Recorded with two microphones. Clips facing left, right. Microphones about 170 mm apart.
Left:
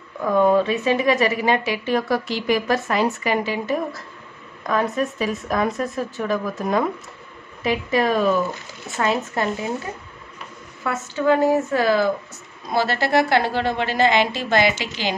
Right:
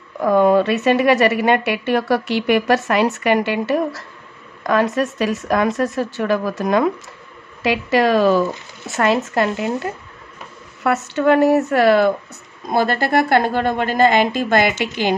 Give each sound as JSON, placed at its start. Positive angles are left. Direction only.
{"t": 0.2, "sound": "a woman's voice", "side_deg": -75}
{"t": 12.6, "sound": "a woman's voice", "side_deg": -50}